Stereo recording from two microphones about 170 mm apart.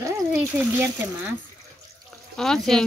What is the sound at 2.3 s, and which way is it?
Speech, 5° left (ahead or behind).